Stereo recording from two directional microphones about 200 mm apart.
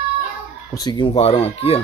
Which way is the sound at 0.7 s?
20° left (ahead or behind).